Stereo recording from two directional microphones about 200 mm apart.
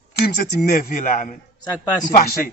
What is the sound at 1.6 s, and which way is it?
Speech, 20° left (ahead or behind).